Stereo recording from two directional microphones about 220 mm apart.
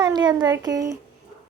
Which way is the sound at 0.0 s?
20° right (ahead or behind).